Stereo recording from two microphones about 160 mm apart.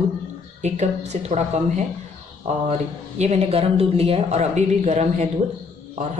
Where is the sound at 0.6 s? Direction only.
45° right (ahead or behind).